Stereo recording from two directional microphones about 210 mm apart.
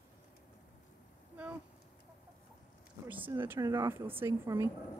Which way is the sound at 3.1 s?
10° right (ahead or behind).